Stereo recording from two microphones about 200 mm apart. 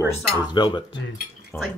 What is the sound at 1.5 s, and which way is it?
Speech, 10° left (ahead or behind).